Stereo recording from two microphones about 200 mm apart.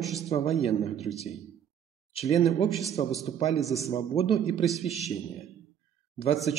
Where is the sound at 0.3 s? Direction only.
30° left (ahead or behind).